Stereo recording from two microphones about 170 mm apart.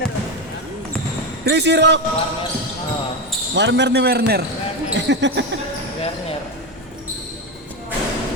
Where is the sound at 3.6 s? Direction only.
90° right; by 4.4 s 70° right (ahead or behind).